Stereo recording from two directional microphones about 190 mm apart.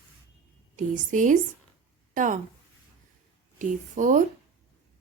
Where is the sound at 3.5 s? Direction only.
40° right (ahead or behind).